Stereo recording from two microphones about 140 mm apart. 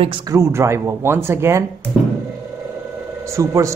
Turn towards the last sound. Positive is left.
turn(degrees=-20)  # may be behind; listen again after turning